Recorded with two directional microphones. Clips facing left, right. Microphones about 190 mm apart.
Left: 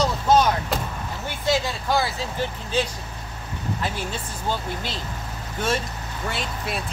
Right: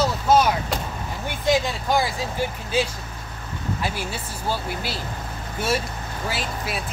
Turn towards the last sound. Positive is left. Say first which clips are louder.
# right 1 dB
turn(degrees=0)  # may be behind; listen again after turning